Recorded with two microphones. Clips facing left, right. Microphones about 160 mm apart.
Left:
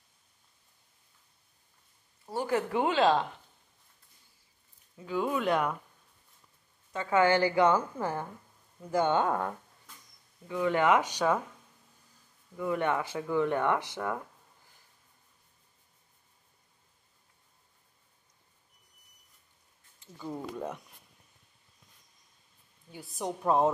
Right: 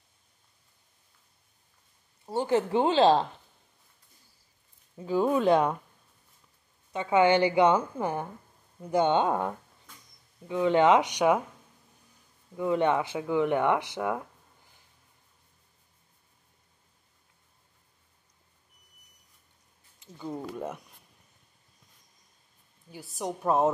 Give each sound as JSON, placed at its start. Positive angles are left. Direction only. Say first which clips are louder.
{"t": 2.2, "sound": "a woman's voice", "louder": "right 4 dB", "side_deg": -25}
{"t": 4.9, "sound": "speech", "louder": "right 5 dB", "side_deg": -35}
{"t": 6.9, "sound": "a woman's voice", "louder": "right 3 dB", "side_deg": -20}
{"t": 12.5, "sound": "speech", "louder": "right 4 dB", "side_deg": -20}
{"t": 20.2, "sound": "a woman's voice", "louder": "right 2 dB", "side_deg": -5}
{"t": 22.8, "sound": "a woman's voice", "louder": "right 1 dB", "side_deg": 0}